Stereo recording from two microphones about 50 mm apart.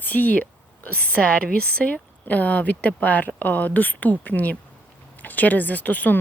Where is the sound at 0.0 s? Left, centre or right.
Left.